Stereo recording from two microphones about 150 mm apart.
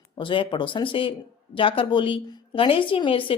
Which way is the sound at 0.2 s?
35° left (ahead or behind).